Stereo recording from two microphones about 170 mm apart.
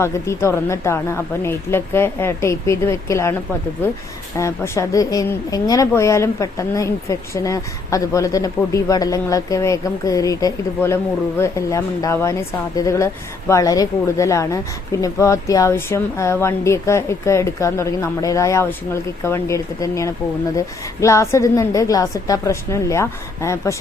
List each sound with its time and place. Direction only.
0.0 s speech: 15° left (ahead or behind)
4.4 s speech: 15° left (ahead or behind)